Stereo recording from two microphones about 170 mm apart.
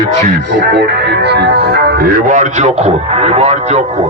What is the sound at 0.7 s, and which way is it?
Speech, 80° right.